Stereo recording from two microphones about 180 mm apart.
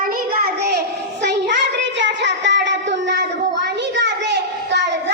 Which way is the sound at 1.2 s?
75° right (ahead or behind).